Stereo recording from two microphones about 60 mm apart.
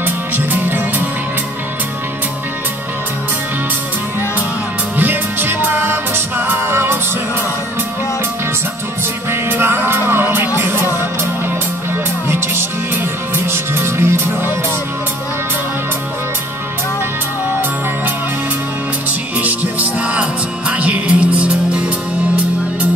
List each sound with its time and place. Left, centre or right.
0.7 s music: right
4.9 s music: right
9.3 s music: right
13.5 s music: right
19.4 s music: right